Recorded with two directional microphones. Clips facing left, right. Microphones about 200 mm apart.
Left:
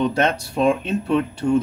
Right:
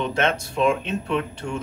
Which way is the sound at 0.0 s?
35° left (ahead or behind).